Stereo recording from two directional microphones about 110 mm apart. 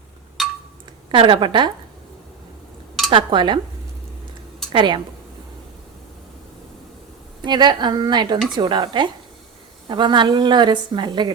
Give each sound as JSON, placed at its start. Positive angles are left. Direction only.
{"t": 1.1, "sound": "a woman's voice", "side_deg": -50}
{"t": 3.1, "sound": "a woman's voice", "side_deg": -50}
{"t": 4.7, "sound": "a woman's voice", "side_deg": -45}
{"t": 7.4, "sound": "a woman's voice", "side_deg": -40}